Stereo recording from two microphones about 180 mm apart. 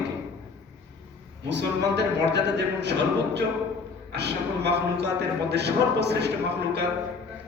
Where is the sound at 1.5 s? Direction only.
70° right (ahead or behind).